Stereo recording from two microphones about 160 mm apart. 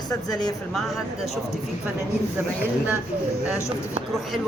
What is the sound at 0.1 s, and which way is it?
Speech, 25° left (ahead or behind).